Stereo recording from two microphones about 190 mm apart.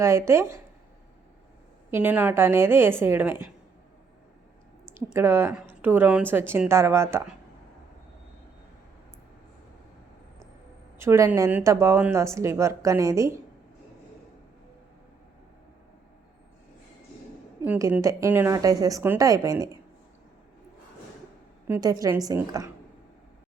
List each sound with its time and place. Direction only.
0.0 s speech: 15° right (ahead or behind)
1.9 s speech: 10° right (ahead or behind)
4.9 s speech: 10° right (ahead or behind)
10.9 s speech: 15° right (ahead or behind)
17.7 s speech: 10° right (ahead or behind)
21.7 s speech: 20° right (ahead or behind)